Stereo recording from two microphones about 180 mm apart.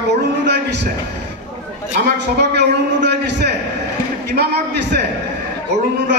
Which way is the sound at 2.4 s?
65° right (ahead or behind).